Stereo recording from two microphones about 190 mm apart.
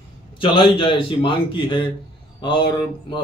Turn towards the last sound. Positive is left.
turn(degrees=25)  # may be behind; listen again after turning